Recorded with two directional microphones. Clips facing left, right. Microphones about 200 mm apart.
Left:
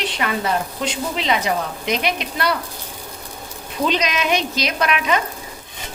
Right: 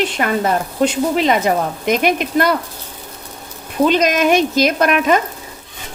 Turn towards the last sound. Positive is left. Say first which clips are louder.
# right 6 dB
turn(degrees=-45)  # may be behind; listen again after turning